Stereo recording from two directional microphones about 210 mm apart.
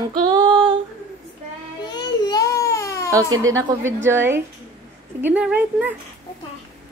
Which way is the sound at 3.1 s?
15° right (ahead or behind).